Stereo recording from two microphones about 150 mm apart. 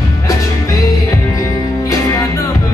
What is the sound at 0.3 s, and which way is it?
Music, 20° left (ahead or behind).